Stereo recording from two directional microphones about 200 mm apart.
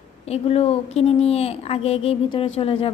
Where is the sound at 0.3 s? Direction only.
30° left (ahead or behind).